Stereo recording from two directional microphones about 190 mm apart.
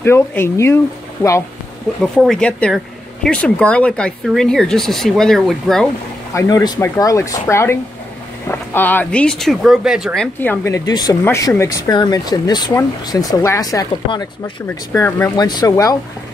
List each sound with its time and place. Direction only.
0.0 s speech: 10° left (ahead or behind)
2.1 s speech: 5° left (ahead or behind)
6.3 s speech: 20° left (ahead or behind)